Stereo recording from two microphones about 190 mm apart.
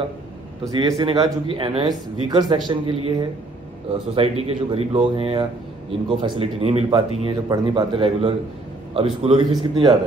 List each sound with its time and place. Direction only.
0.7 s a man's voice: 20° right (ahead or behind)